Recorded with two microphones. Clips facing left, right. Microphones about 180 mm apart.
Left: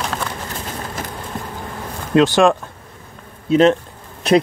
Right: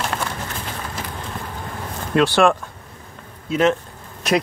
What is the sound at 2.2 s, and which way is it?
Speech, 15° left (ahead or behind).